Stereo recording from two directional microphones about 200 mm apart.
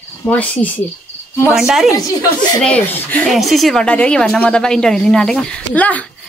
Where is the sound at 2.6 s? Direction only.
5° left (ahead or behind).